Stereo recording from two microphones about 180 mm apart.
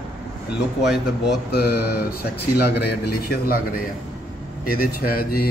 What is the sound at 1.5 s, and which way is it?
Speech, 60° left (ahead or behind).